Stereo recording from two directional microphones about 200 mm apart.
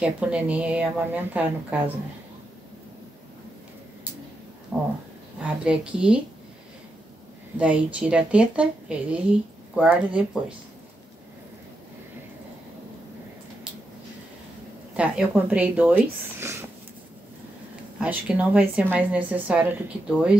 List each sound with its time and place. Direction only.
0.0 s a woman's voice: 5° right (ahead or behind)
4.7 s a woman's voice: 5° right (ahead or behind)
7.5 s a woman's voice: 5° right (ahead or behind)
15.0 s a woman's voice: 5° right (ahead or behind)
18.0 s a woman's voice: 5° right (ahead or behind)